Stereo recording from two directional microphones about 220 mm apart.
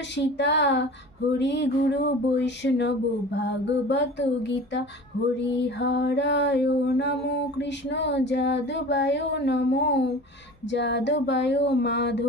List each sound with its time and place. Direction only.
0.4 s mantra: 55° left (ahead or behind)